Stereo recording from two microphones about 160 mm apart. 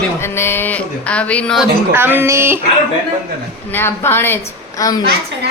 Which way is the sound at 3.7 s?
15° left (ahead or behind).